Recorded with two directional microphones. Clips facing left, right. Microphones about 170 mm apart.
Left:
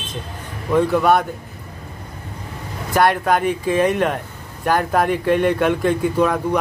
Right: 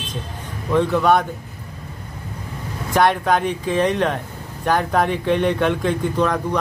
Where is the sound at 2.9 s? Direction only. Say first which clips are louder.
Left 1 dB; 5° left (ahead or behind).